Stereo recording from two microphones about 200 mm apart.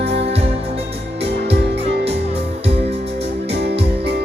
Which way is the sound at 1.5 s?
55° right (ahead or behind).